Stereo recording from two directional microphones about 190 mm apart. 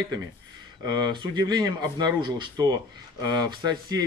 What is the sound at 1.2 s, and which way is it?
Speech, 20° right (ahead or behind).